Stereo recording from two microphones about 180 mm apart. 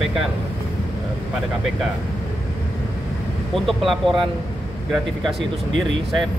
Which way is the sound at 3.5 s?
Centre (ahead or behind).